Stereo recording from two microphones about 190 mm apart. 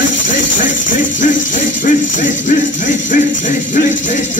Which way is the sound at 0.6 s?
45° left (ahead or behind).